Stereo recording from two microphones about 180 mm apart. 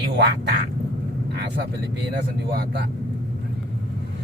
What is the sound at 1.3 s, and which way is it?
Vehicle, 65° right (ahead or behind).